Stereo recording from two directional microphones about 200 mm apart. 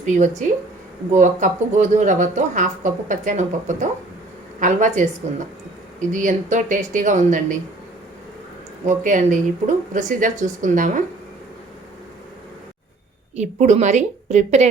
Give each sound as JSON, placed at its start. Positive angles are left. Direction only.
{"t": 0.0, "sound": "speech", "side_deg": -35}
{"t": 8.9, "sound": "speech", "side_deg": -40}
{"t": 13.3, "sound": "speech", "side_deg": -35}